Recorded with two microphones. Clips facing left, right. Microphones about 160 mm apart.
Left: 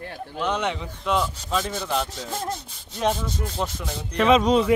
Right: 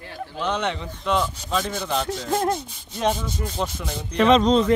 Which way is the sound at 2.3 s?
75° right (ahead or behind).